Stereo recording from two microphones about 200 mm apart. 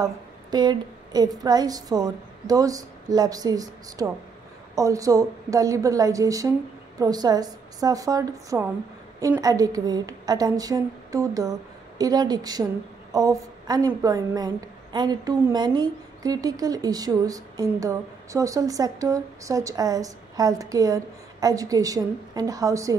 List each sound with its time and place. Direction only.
0.0 s a woman's voice: 20° right (ahead or behind)